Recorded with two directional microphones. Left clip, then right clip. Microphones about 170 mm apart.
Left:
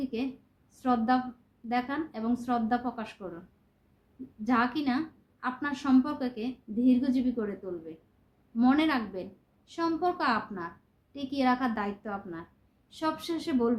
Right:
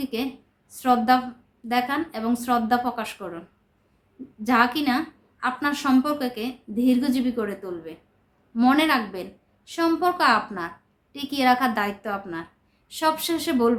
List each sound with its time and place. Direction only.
0.0 s a woman's voice: 15° right (ahead or behind)
4.4 s a woman's voice: 15° right (ahead or behind)